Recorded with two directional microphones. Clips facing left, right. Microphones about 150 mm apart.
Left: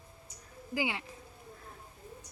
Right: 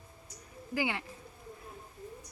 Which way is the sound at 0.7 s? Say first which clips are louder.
Right 1 dB; 15° left (ahead or behind).